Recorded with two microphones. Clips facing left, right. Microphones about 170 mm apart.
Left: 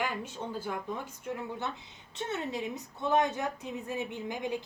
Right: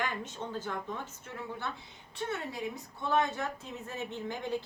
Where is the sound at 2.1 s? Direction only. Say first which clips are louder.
Left 2 dB; 20° left (ahead or behind).